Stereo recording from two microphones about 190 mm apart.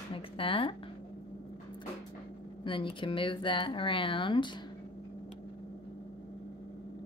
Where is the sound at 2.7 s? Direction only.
25° left (ahead or behind).